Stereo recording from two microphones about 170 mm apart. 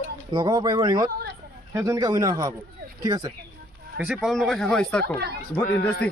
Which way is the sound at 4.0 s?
5° right (ahead or behind).